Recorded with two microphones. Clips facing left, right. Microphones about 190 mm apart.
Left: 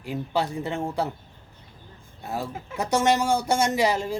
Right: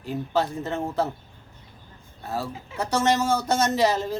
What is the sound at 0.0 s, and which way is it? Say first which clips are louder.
Speech: right 1 dB; 15° left (ahead or behind).